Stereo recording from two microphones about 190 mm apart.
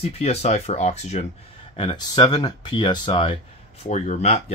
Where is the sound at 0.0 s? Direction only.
30° left (ahead or behind).